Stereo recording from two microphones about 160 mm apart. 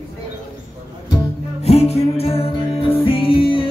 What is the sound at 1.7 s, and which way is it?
Music, 40° left (ahead or behind).